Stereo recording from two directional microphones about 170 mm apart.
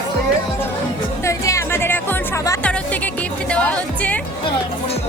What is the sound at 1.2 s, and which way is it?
Music, 20° left (ahead or behind).